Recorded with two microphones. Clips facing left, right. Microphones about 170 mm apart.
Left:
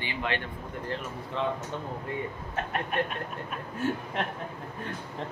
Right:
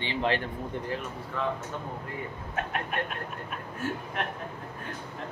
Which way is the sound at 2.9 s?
Centre (ahead or behind).